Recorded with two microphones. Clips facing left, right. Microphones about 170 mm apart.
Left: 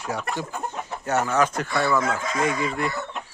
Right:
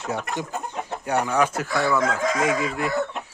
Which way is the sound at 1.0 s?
15° right (ahead or behind).